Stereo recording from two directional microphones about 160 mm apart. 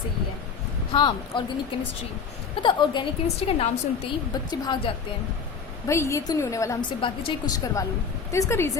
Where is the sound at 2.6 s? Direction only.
30° left (ahead or behind).